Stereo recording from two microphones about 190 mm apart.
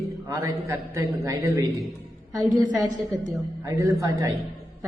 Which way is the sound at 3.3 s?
15° right (ahead or behind).